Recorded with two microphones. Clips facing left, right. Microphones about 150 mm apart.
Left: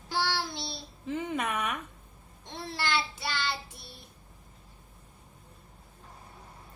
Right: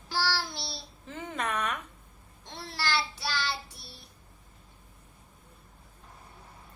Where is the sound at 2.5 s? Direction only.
20° left (ahead or behind).